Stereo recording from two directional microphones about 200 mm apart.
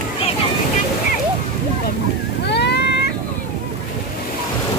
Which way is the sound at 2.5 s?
60° left (ahead or behind).